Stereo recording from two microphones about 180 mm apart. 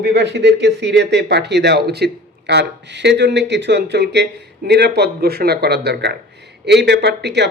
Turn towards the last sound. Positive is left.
turn(degrees=-70)  # may be behind; listen again after turning